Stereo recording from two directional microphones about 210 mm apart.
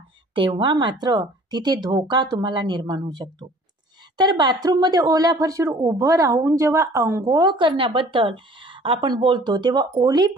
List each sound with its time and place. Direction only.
0.3 s speech: 25° right (ahead or behind)